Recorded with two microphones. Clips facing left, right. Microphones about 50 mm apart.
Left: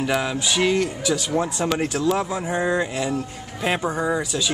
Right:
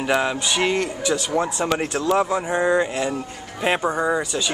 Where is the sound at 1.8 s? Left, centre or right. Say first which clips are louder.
Right 2 dB; centre.